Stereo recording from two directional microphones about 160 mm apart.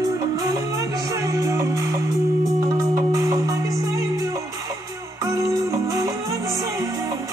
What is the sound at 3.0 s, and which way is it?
Music, 20° right (ahead or behind).